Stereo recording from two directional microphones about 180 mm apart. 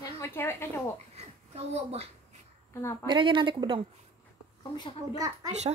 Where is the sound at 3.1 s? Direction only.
25° right (ahead or behind).